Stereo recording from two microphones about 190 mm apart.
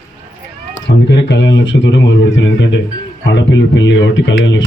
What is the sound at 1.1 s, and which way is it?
Speech, 70° left (ahead or behind).